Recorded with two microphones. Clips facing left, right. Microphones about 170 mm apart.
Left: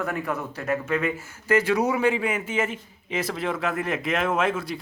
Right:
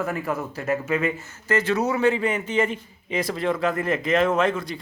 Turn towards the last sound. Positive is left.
turn(degrees=5)  # may be behind; listen again after turning